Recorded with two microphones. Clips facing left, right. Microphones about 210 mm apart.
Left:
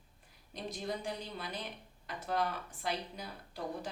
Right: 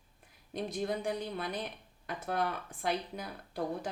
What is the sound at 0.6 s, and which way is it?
A woman's voice, 55° right (ahead or behind).